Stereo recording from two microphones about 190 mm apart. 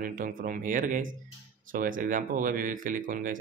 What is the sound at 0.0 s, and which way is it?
Speech, 45° right (ahead or behind).